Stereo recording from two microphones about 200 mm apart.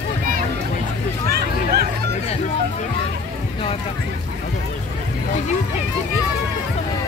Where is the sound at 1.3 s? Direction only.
50° right (ahead or behind).